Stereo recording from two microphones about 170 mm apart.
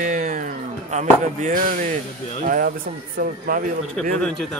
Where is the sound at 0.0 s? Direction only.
45° right (ahead or behind).